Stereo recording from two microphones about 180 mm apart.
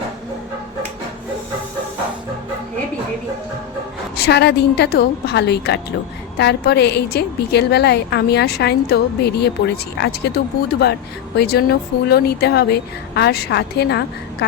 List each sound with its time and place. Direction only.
4.2 s a woman's voice: 65° left (ahead or behind)